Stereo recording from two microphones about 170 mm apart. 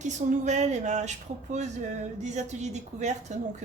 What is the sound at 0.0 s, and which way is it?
A woman's voice, 45° right (ahead or behind).